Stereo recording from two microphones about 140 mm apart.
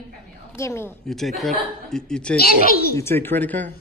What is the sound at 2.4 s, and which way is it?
Speech, 90° left.